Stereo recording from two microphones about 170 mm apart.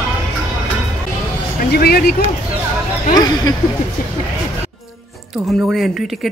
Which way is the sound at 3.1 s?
25° left (ahead or behind).